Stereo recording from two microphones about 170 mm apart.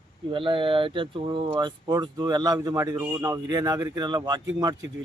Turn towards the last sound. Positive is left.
turn(degrees=-20)  # may be behind; listen again after turning